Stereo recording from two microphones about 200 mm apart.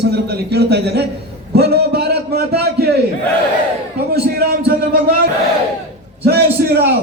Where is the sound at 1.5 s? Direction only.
50° right (ahead or behind).